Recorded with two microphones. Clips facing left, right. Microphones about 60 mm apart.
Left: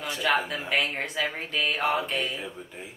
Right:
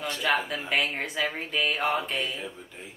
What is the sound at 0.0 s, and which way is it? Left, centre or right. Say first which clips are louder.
Speech: left 1 dB; centre.